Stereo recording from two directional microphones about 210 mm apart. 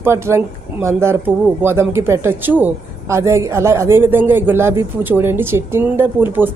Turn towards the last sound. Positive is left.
turn(degrees=-10)  # may be behind; listen again after turning